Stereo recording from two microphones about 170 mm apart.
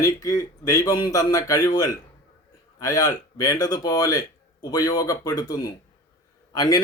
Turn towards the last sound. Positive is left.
turn(degrees=20)  # may be behind; listen again after turning